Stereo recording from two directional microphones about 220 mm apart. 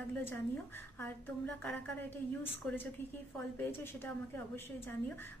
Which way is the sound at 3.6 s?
10° left (ahead or behind).